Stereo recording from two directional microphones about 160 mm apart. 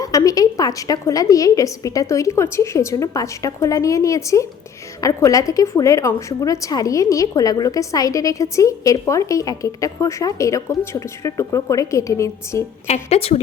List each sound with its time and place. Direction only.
0.0 s a woman's voice: 20° left (ahead or behind)
12.9 s a woman's voice: 40° left (ahead or behind)